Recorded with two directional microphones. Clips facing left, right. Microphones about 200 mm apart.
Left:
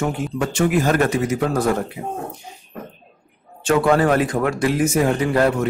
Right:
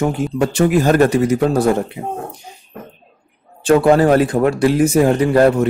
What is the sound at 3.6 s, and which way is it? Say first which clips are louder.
A man's voice: right 5 dB; 35° right (ahead or behind).